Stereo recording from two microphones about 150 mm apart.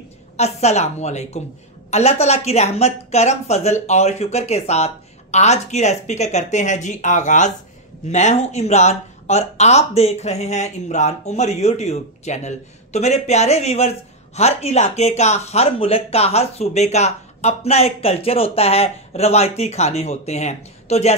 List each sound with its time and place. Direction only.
0.4 s speech: 45° left (ahead or behind)